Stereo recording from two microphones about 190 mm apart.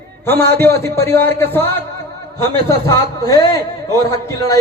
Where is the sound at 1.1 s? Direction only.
10° left (ahead or behind).